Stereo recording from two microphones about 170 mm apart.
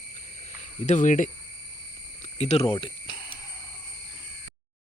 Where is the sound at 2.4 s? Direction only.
35° left (ahead or behind).